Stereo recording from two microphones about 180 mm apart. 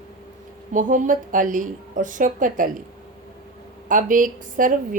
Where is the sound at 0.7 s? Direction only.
45° right (ahead or behind).